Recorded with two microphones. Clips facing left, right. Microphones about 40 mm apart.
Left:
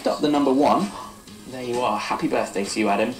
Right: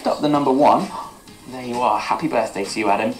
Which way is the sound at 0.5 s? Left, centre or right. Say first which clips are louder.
Right 4 dB; right.